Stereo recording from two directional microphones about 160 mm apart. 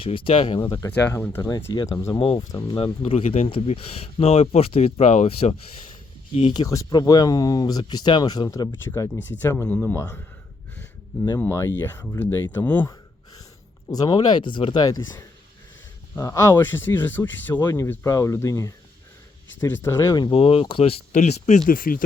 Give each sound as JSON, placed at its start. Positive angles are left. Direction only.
{"t": 0.0, "sound": "speech", "side_deg": 35}
{"t": 0.6, "sound": "speech", "side_deg": 25}
{"t": 0.9, "sound": "speech", "side_deg": 10}
{"t": 6.5, "sound": "speech", "side_deg": 25}
{"t": 11.3, "sound": "speech", "side_deg": 15}
{"t": 13.9, "sound": "speech", "side_deg": 25}
{"t": 17.5, "sound": "speech", "side_deg": 20}
{"t": 21.7, "sound": "speech", "side_deg": 60}